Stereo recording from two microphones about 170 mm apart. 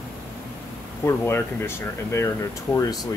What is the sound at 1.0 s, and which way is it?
Speech, 15° left (ahead or behind).